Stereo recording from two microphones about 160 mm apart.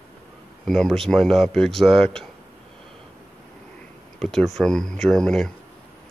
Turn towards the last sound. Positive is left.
turn(degrees=5)  # may be behind; listen again after turning